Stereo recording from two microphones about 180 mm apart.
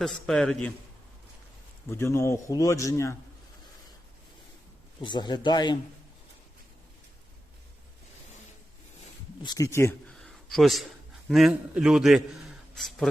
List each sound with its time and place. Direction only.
0.0 s a man's voice: 5° left (ahead or behind)
1.9 s a man's voice: 15° left (ahead or behind)
5.0 s speech: 25° left (ahead or behind)
9.4 s speech: 20° left (ahead or behind)
10.2 s a man's voice: centre (ahead or behind)